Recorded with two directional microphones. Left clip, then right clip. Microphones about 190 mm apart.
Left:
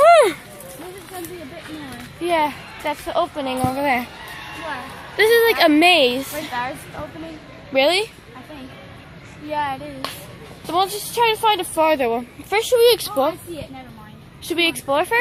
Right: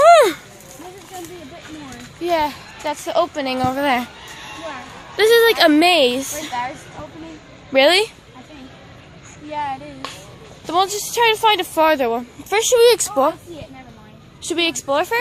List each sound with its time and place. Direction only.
0.0 s a sound: 25° right (ahead or behind)
2.2 s a child's voice: 15° right (ahead or behind)
3.1 s speech: 40° right (ahead or behind)
5.1 s a woman's voice: 30° right (ahead or behind)
7.7 s speech: 35° right (ahead or behind)
9.5 s child singing: centre (ahead or behind)
10.7 s speech: 30° right (ahead or behind)
14.4 s a woman's voice: 25° right (ahead or behind)